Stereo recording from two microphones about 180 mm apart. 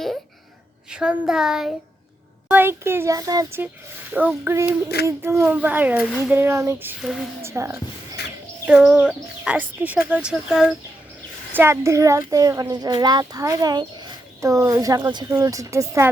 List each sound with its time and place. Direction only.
0.9 s speech: 5° right (ahead or behind)
7.0 s speech: centre (ahead or behind)
7.4 s speech: 15° right (ahead or behind)
11.5 s speech: 15° right (ahead or behind)